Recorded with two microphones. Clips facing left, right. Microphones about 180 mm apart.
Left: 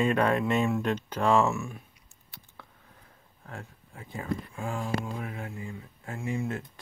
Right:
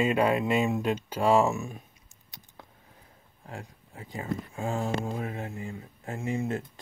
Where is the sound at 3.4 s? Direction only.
20° right (ahead or behind).